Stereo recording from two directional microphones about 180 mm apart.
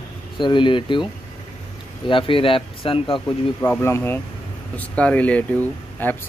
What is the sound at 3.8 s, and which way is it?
Speech, 15° left (ahead or behind).